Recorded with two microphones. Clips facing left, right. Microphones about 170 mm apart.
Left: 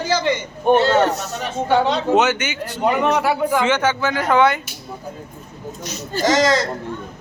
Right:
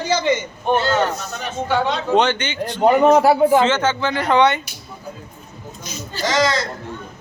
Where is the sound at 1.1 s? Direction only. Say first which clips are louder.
Left 3 dB; 75° left (ahead or behind).